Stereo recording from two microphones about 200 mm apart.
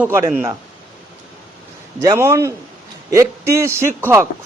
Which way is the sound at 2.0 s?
15° right (ahead or behind).